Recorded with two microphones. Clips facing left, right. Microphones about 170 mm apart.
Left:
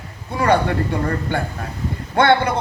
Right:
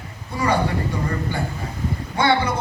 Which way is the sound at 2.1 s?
60° left (ahead or behind).